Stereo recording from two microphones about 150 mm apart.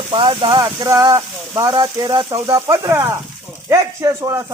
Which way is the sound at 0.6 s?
25° right (ahead or behind).